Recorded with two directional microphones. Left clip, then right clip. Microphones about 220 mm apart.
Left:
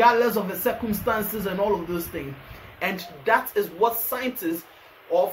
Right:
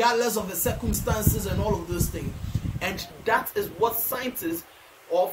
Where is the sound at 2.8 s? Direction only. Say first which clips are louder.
Left 3 dB; 15° right (ahead or behind).